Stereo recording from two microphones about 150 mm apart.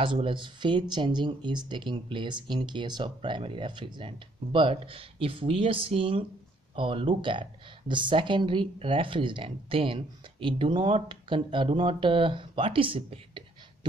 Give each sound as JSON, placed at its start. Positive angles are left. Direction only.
{"t": 0.0, "sound": "speech", "side_deg": -35}